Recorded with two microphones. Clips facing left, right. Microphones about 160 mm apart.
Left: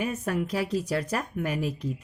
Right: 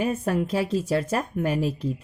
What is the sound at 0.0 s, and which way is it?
A woman's voice, 30° right (ahead or behind).